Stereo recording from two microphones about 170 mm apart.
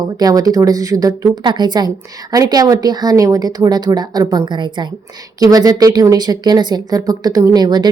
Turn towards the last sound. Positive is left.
turn(degrees=-25)  # may be behind; listen again after turning